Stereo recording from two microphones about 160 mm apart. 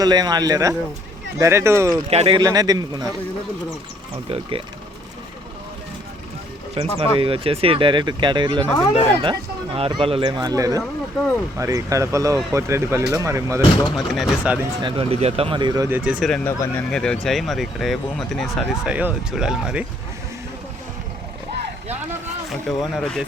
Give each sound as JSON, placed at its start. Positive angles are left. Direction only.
{"t": 0.0, "sound": "speech", "side_deg": -25}
{"t": 2.0, "sound": "speech", "side_deg": -40}
{"t": 2.4, "sound": "speech", "side_deg": -25}
{"t": 4.3, "sound": "speech", "side_deg": -35}
{"t": 6.8, "sound": "speech", "side_deg": -35}
{"t": 8.6, "sound": "speech", "side_deg": 20}
{"t": 9.2, "sound": "speech", "side_deg": -35}
{"t": 13.6, "sound": "speech", "side_deg": 25}
{"t": 13.9, "sound": "speech", "side_deg": 0}
{"t": 14.8, "sound": "speech", "side_deg": -30}
{"t": 16.0, "sound": "speech", "side_deg": 0}
{"t": 16.5, "sound": "speech", "side_deg": 15}
{"t": 22.4, "sound": "speech", "side_deg": 0}